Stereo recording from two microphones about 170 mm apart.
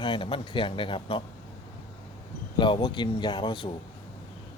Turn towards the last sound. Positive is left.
turn(degrees=30)  # may be behind; listen again after turning